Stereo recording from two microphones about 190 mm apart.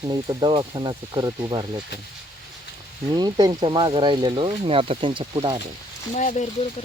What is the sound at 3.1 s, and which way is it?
Speech, 20° right (ahead or behind).